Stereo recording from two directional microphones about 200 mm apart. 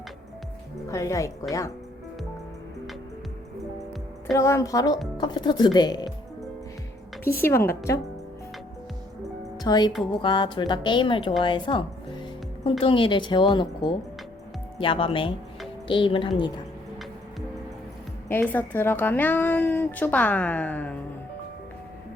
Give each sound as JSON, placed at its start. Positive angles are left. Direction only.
{"t": 0.9, "sound": "speech", "side_deg": 15}
{"t": 4.4, "sound": "a woman's voice", "side_deg": 15}
{"t": 7.4, "sound": "speech", "side_deg": 10}
{"t": 9.6, "sound": "a woman's voice", "side_deg": 20}
{"t": 11.4, "sound": "music", "side_deg": 25}
{"t": 12.8, "sound": "a woman's voice", "side_deg": 25}
{"t": 18.3, "sound": "speech", "side_deg": 10}